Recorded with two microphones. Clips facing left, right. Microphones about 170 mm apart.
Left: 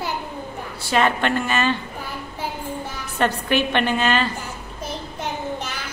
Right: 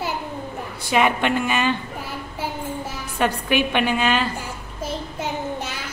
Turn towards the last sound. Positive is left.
turn(degrees=-10)  # may be behind; listen again after turning